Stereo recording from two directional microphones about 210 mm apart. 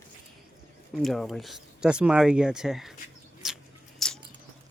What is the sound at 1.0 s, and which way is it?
Speech, centre (ahead or behind).